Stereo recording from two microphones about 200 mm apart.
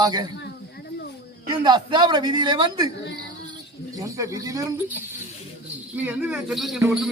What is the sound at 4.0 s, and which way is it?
Speech, 15° right (ahead or behind).